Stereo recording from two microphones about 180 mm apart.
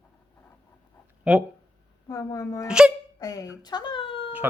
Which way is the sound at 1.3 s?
5° right (ahead or behind).